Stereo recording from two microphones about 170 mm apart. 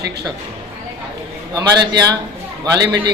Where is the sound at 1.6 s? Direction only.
25° right (ahead or behind).